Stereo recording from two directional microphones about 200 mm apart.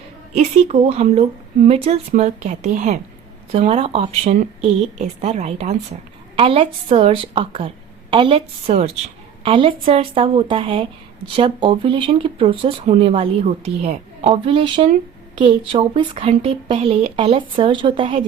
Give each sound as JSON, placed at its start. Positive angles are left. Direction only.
{"t": 0.3, "sound": "speech", "side_deg": -30}